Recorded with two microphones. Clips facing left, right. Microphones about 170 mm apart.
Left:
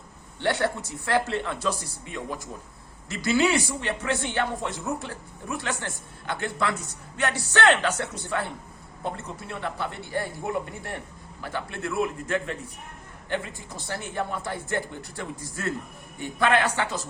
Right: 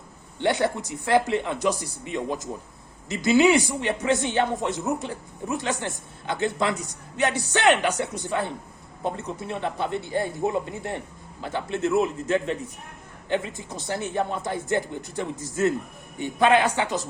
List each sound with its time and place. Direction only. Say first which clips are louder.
0.3 s a man's voice: right 2 dB; 15° right (ahead or behind)